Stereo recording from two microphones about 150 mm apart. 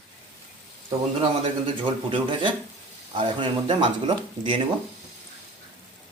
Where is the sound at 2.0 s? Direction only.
35° right (ahead or behind).